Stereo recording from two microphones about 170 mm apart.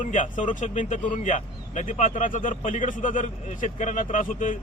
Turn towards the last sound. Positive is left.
turn(degrees=50)  # may be behind; listen again after turning